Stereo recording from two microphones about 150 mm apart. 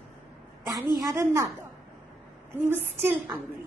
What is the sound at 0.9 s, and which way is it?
Speech, 20° right (ahead or behind).